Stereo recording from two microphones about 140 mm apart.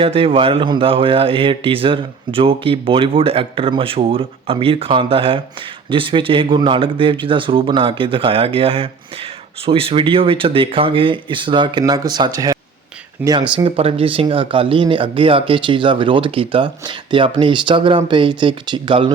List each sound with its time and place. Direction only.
0.0 s speech: 40° right (ahead or behind); by 12.5 s 25° right (ahead or behind)
13.2 s speech: 10° right (ahead or behind)
13.7 s speech: 45° right (ahead or behind)